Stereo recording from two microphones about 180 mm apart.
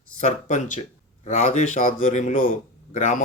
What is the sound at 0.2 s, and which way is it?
Speech, 40° left (ahead or behind).